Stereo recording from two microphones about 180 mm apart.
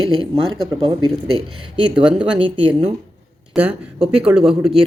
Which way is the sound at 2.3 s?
30° right (ahead or behind).